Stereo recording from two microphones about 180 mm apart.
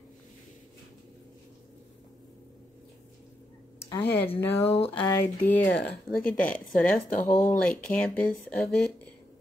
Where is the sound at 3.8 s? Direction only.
15° left (ahead or behind).